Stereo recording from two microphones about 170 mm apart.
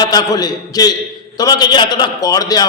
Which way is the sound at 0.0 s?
25° left (ahead or behind).